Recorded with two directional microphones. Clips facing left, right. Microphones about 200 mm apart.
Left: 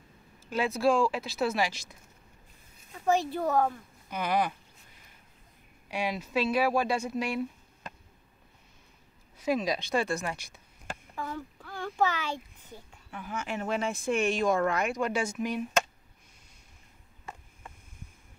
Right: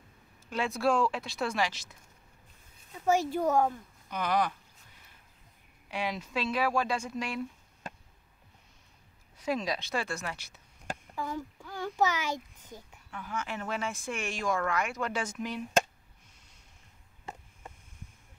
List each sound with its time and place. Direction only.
0.5 s speech: 5° left (ahead or behind)
2.9 s speech: 10° right (ahead or behind)
4.1 s speech: 10° left (ahead or behind)
5.9 s speech: 10° left (ahead or behind)
9.4 s speech: 15° left (ahead or behind)
11.1 s speech: 10° right (ahead or behind)
13.1 s speech: 15° left (ahead or behind)